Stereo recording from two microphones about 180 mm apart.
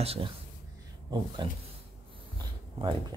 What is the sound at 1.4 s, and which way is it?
Speech, 25° right (ahead or behind).